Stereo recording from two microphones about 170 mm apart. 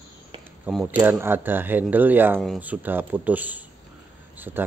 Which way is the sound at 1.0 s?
10° right (ahead or behind).